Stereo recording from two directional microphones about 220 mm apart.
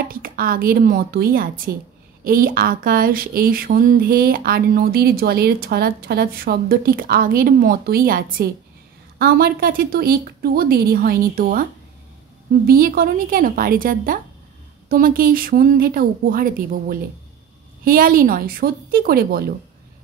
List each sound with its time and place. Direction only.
0.1 s a woman's voice: 40° right (ahead or behind)
12.6 s speech: 40° right (ahead or behind)